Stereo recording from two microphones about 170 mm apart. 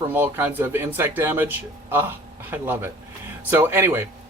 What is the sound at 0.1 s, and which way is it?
Speech, 10° right (ahead or behind).